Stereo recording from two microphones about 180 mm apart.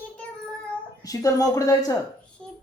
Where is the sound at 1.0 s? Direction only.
20° left (ahead or behind).